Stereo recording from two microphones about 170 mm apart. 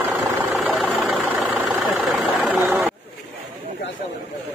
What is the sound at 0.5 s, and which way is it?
Vehicle, centre (ahead or behind).